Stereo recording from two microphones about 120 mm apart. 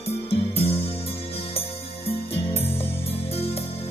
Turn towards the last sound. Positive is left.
turn(degrees=55)  # may be behind; listen again after turning